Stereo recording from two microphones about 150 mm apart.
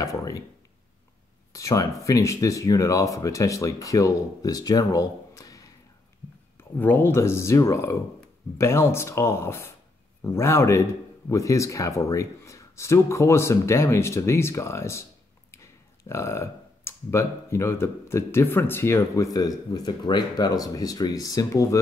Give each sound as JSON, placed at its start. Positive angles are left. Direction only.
{"t": 0.0, "sound": "speech", "side_deg": 20}
{"t": 1.5, "sound": "speech", "side_deg": 20}
{"t": 6.8, "sound": "speech", "side_deg": 15}